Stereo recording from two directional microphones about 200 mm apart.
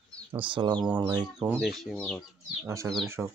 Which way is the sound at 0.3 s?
25° right (ahead or behind).